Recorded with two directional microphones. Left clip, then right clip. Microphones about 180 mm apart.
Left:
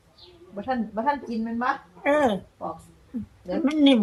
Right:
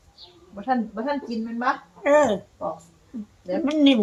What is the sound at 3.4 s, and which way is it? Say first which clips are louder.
Speech: right 1 dB; 15° left (ahead or behind).